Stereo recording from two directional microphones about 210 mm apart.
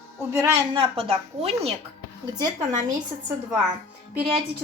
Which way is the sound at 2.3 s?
20° right (ahead or behind).